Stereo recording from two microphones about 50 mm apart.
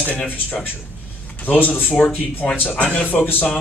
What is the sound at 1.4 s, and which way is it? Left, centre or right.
A man's voice, left.